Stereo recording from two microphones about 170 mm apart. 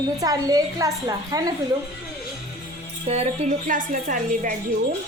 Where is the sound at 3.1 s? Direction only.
40° right (ahead or behind).